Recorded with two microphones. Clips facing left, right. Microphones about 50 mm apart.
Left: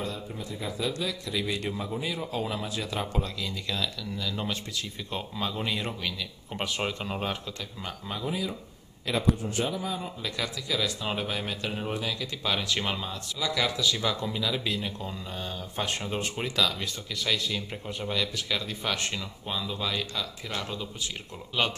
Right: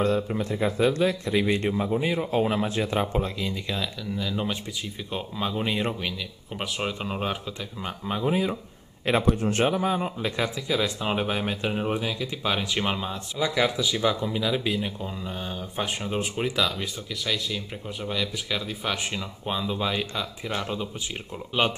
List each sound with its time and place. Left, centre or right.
0.0 s a man's voice: right
6.5 s speech: centre
7.8 s speech: right
9.2 s speech: right; by 16.9 s centre
17.2 s speech: centre
19.4 s speech: right